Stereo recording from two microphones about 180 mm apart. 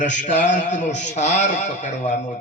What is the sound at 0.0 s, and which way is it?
A man's voice, 45° left (ahead or behind).